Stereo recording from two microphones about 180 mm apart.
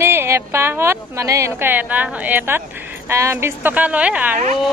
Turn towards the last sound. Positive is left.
turn(degrees=-40)  # may be behind; listen again after turning